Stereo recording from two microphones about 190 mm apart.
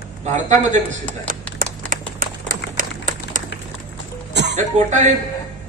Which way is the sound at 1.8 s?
45° right (ahead or behind).